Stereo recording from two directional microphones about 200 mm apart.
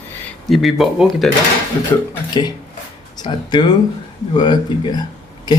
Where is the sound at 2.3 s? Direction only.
20° left (ahead or behind).